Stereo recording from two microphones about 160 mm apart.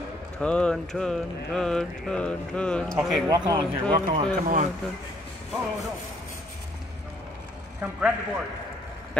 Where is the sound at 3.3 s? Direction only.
25° right (ahead or behind).